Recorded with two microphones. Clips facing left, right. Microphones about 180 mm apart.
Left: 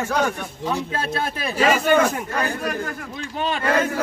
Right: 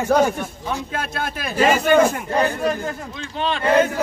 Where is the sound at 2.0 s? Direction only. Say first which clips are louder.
Right 4 dB; 25° right (ahead or behind).